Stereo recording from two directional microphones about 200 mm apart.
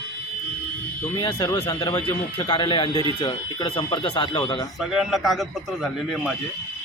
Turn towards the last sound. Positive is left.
turn(degrees=0)  # may be behind; listen again after turning